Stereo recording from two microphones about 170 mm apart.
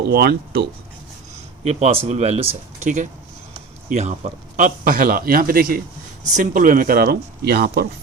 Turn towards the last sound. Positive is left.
turn(degrees=-75)  # may be behind; listen again after turning